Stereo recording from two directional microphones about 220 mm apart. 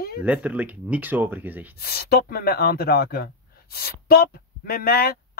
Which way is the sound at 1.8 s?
45° left (ahead or behind).